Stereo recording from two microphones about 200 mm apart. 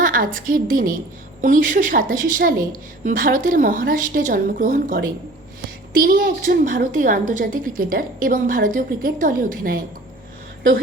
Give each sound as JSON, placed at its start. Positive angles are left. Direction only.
{"t": 0.0, "sound": "a woman's voice", "side_deg": -45}